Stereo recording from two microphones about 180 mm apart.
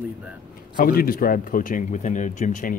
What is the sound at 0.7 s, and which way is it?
Speech, 55° left (ahead or behind).